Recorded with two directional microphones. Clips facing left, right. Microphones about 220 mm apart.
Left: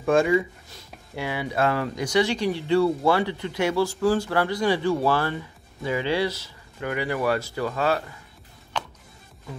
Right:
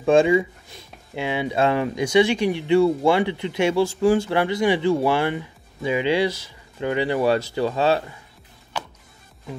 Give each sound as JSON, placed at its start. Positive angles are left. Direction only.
{"t": 0.0, "sound": "speech", "side_deg": -25}
{"t": 8.7, "sound": "music", "side_deg": -10}